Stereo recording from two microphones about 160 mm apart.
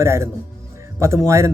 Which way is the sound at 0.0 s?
15° right (ahead or behind).